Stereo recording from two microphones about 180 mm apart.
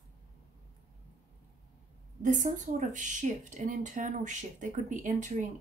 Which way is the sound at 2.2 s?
45° right (ahead or behind).